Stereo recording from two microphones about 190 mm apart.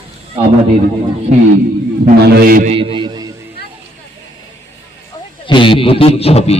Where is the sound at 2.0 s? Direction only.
55° right (ahead or behind).